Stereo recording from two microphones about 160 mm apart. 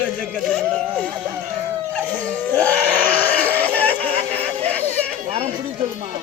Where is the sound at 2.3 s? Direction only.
10° left (ahead or behind).